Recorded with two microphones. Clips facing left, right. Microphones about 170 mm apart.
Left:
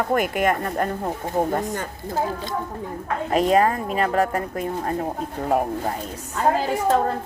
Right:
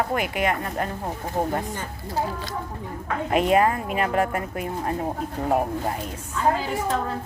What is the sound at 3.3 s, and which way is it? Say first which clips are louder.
A woman's voice: left 1 dB; 35° left (ahead or behind).